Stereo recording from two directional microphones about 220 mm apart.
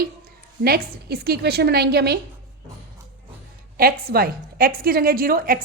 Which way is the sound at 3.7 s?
45° right (ahead or behind).